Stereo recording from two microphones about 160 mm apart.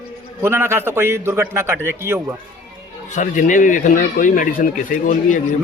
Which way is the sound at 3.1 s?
50° left (ahead or behind).